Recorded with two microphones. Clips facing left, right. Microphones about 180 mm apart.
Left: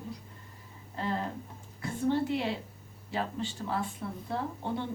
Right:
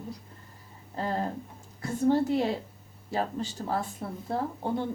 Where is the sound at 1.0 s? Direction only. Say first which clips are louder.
Right 3 dB; 40° right (ahead or behind).